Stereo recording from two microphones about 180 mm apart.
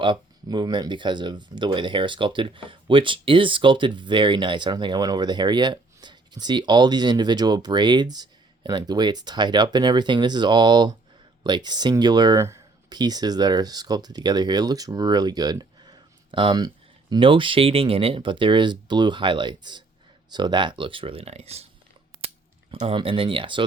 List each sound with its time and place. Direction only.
0.0 s speech: 25° right (ahead or behind)
22.7 s speech: 30° right (ahead or behind)